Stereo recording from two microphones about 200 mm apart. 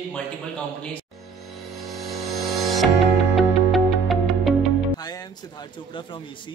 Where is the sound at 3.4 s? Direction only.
Centre (ahead or behind).